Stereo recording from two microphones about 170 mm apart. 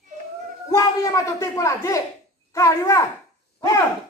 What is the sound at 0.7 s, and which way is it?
A child's voice, 20° left (ahead or behind).